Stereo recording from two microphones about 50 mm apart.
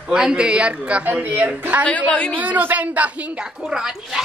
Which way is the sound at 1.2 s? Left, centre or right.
Right.